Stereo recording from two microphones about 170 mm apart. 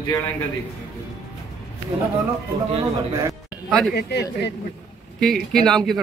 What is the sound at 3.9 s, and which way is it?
Speech, 75° left (ahead or behind).